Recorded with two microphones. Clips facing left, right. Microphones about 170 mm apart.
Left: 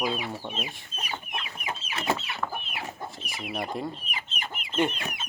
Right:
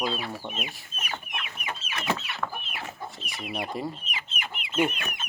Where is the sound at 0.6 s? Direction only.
30° left (ahead or behind).